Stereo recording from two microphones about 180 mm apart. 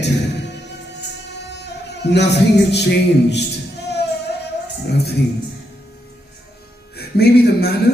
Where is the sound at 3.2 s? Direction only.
70° left (ahead or behind).